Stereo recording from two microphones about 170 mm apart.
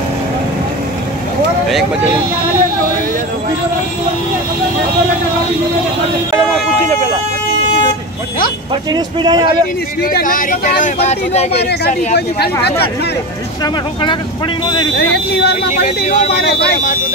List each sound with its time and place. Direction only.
6.9 s speech: 40° right (ahead or behind)
8.9 s speech: 25° right (ahead or behind)
10.0 s speech: 55° left (ahead or behind)
11.0 s speech: 40° left (ahead or behind)
15.0 s speech: 70° left (ahead or behind)